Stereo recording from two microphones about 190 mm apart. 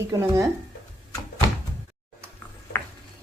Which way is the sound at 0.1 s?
20° right (ahead or behind).